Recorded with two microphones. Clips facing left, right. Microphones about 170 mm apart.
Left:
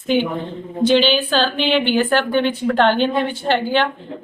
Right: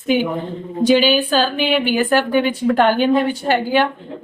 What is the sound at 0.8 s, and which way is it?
A woman's voice, 10° right (ahead or behind).